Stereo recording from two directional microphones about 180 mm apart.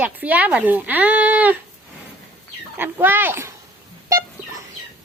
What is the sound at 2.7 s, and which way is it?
Speech, 10° right (ahead or behind).